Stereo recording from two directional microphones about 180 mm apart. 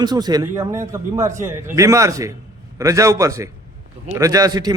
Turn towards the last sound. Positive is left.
turn(degrees=-20)  # may be behind; listen again after turning